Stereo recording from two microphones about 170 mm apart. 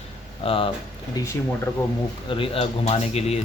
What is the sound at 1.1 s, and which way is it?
Speech, 15° left (ahead or behind).